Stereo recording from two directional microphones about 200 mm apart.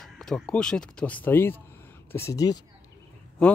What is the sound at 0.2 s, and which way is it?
Speech, 5° left (ahead or behind).